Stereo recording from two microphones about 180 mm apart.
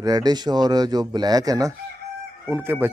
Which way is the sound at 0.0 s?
20° right (ahead or behind).